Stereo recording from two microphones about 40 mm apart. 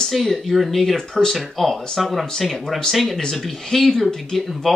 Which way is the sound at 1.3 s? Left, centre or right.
Centre.